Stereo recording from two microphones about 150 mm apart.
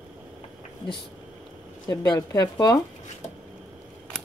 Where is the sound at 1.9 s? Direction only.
25° left (ahead or behind).